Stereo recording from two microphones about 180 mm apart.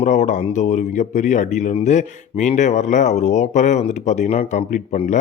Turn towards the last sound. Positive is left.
turn(degrees=45)  # may be behind; listen again after turning